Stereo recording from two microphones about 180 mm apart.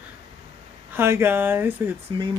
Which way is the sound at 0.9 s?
15° right (ahead or behind).